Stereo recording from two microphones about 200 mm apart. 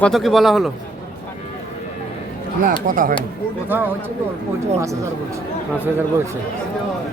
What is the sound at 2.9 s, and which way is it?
Speech, 45° right (ahead or behind).